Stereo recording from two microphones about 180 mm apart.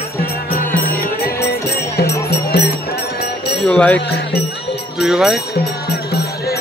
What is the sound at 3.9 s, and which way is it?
Speech, 70° left (ahead or behind).